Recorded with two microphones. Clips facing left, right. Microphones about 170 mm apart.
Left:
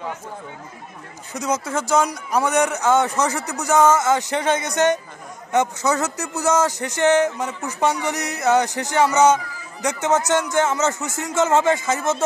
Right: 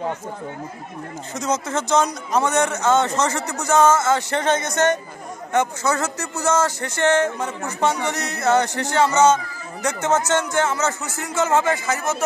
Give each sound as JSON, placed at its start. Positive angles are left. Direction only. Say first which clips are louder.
{"t": 1.3, "sound": "a man's voice", "louder": "even", "side_deg": 10}